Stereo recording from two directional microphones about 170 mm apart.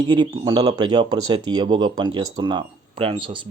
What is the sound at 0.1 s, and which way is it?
Speech, 25° right (ahead or behind).